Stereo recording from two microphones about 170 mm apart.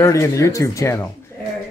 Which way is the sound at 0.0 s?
20° left (ahead or behind).